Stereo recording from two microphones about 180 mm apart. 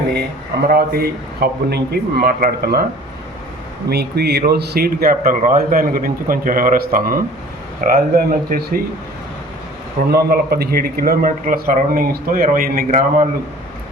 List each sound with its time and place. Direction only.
0.7 s speech: 60° right (ahead or behind)
3.8 s speech: 65° right (ahead or behind)
10.0 s speech: 60° right (ahead or behind)